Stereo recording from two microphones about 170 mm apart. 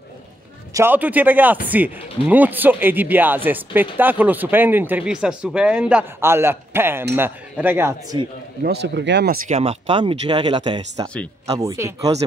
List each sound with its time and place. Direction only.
0.7 s speech: 10° right (ahead or behind)
8.6 s speech: 85° right
9.5 s speech: 35° right (ahead or behind); by 12.1 s 20° right (ahead or behind)